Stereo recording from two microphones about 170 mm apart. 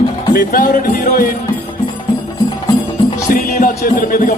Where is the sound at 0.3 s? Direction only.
55° left (ahead or behind).